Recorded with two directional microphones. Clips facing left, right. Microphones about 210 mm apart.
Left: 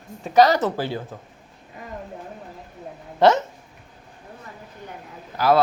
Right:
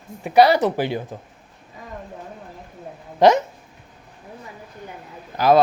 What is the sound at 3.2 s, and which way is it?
Speech, 15° right (ahead or behind).